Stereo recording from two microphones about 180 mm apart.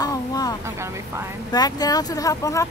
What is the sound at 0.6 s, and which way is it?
Speech, 15° right (ahead or behind).